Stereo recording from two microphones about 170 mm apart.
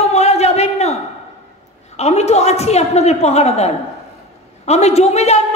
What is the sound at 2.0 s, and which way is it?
A woman's voice, 40° left (ahead or behind).